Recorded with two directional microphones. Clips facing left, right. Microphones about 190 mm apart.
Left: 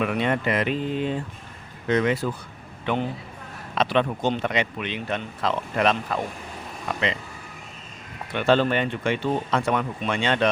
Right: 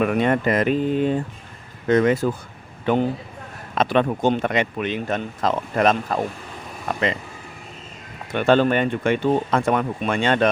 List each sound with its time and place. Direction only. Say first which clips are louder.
0.0 s a man's voice: right 5 dB; 45° right (ahead or behind)
8.3 s speech: right 3 dB; 50° right (ahead or behind)